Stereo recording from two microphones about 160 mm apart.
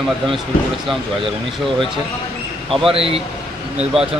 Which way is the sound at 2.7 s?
35° right (ahead or behind).